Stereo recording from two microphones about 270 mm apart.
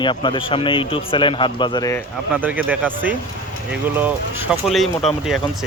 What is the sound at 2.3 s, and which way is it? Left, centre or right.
Speech, centre.